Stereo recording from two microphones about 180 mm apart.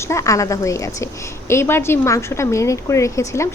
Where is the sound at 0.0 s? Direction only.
15° left (ahead or behind).